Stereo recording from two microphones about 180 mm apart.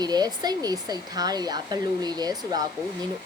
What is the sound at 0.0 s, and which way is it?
Speech, 20° right (ahead or behind).